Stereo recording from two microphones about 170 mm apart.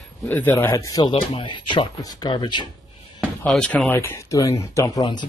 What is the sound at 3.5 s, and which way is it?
Speech, 5° left (ahead or behind).